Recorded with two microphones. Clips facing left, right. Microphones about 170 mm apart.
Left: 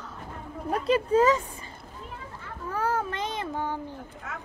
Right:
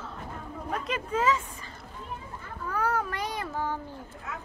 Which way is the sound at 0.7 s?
35° left (ahead or behind).